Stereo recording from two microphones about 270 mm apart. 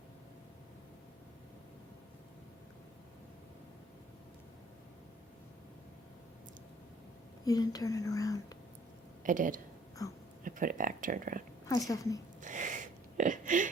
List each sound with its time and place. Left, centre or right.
7.4 s speech: centre
9.2 s speech: right
10.0 s speech: centre
10.4 s speech: right
11.9 s speech: centre
12.4 s a sound: right